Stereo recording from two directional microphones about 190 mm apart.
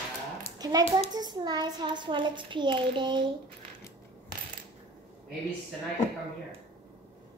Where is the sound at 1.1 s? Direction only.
20° right (ahead or behind).